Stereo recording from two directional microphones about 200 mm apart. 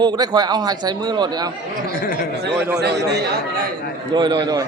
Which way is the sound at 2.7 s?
55° right (ahead or behind).